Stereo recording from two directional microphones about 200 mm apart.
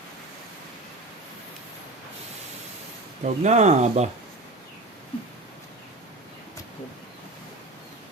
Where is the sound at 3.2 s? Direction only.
35° right (ahead or behind).